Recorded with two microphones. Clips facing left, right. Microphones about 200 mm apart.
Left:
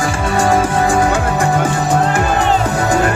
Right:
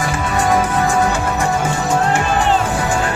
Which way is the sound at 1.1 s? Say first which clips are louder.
Left 3 dB; 55° left (ahead or behind).